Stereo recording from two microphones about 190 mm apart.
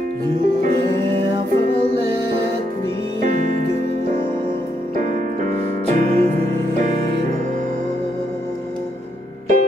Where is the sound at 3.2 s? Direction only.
40° right (ahead or behind).